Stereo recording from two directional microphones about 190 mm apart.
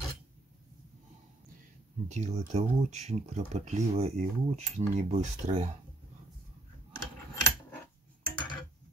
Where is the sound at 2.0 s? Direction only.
40° right (ahead or behind).